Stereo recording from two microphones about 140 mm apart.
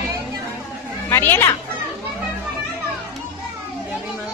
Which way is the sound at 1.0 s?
15° left (ahead or behind).